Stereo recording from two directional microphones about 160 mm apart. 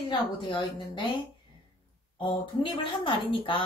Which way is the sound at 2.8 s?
35° left (ahead or behind).